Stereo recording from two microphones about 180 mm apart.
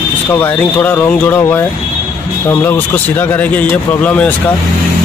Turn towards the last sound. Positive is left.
turn(degrees=10)  # may be behind; listen again after turning